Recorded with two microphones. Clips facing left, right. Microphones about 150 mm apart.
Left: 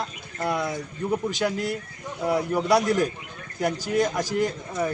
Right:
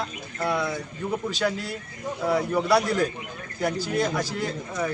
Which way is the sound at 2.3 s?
15° left (ahead or behind).